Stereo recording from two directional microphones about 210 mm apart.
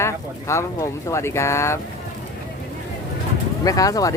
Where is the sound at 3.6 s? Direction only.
15° left (ahead or behind).